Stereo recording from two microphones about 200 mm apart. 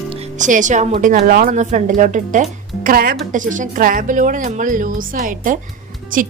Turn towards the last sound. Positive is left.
turn(degrees=-45)  # may be behind; listen again after turning